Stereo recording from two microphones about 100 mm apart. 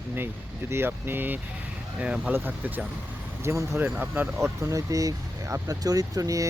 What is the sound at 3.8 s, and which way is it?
Speech, 15° right (ahead or behind).